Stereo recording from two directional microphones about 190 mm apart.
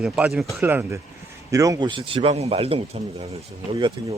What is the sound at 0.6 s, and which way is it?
Speech, 15° right (ahead or behind).